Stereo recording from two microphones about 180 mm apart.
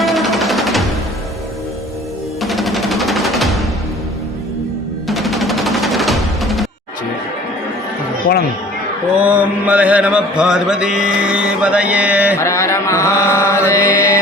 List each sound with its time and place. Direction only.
0.0 s music: centre (ahead or behind)
2.4 s music: centre (ahead or behind)
5.0 s music: centre (ahead or behind)
9.1 s mantra: 5° right (ahead or behind)
12.4 s a sound: 15° left (ahead or behind)
13.7 s mantra: 15° left (ahead or behind)